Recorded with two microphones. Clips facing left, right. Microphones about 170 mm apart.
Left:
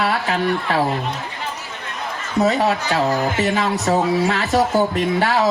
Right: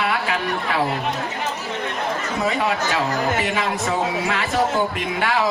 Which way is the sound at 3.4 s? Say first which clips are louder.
Left 4 dB; 40° left (ahead or behind).